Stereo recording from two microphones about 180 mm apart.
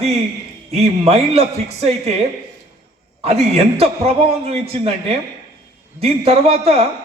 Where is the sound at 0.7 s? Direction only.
35° right (ahead or behind).